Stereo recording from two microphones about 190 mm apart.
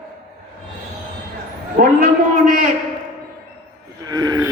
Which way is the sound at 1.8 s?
45° right (ahead or behind).